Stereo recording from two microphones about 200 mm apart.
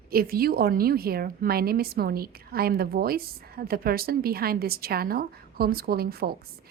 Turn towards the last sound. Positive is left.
turn(degrees=-50)  # may be behind; listen again after turning